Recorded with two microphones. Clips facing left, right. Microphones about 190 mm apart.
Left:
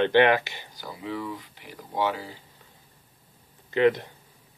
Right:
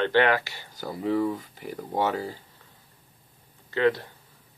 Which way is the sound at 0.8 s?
45° right (ahead or behind).